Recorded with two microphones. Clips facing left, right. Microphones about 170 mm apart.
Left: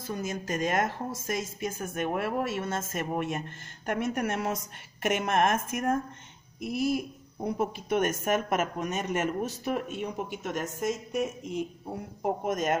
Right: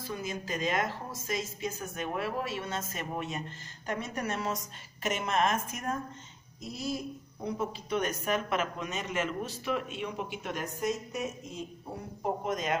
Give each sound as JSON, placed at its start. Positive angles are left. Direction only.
{"t": 0.0, "sound": "a woman's voice", "side_deg": 45}
{"t": 12.4, "sound": "a woman's voice", "side_deg": 50}